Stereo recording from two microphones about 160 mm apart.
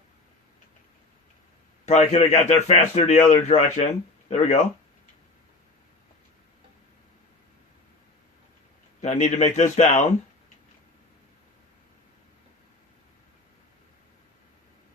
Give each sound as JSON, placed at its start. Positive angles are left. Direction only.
{"t": 1.8, "sound": "a man's voice", "side_deg": 45}
{"t": 9.0, "sound": "a man's voice", "side_deg": 45}